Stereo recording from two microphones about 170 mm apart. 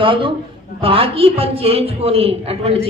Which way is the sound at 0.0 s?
30° right (ahead or behind).